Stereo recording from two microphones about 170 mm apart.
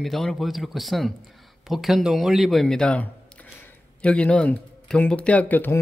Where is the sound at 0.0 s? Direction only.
Centre (ahead or behind).